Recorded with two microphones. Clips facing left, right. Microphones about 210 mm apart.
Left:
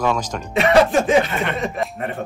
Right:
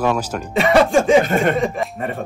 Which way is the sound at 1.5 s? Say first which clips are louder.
Right 3 dB; centre (ahead or behind).